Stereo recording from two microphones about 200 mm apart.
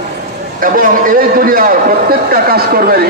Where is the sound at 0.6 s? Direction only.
45° right (ahead or behind).